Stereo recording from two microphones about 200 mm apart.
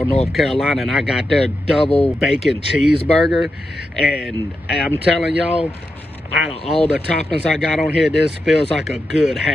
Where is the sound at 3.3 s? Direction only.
Centre (ahead or behind).